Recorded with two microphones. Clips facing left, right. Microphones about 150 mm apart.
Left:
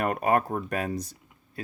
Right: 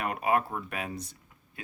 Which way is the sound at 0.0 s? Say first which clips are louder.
Left 4 dB; 45° left (ahead or behind).